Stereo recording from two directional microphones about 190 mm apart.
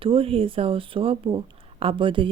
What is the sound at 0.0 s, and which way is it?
Speech, 30° right (ahead or behind).